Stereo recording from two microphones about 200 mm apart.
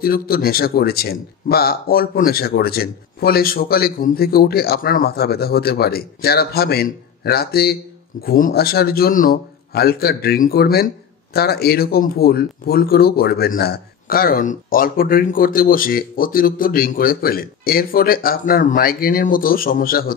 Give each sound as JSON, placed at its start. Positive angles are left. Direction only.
{"t": 0.0, "sound": "speech", "side_deg": 50}